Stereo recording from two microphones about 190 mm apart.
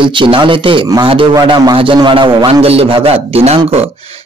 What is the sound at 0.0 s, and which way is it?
A man's voice, 25° right (ahead or behind).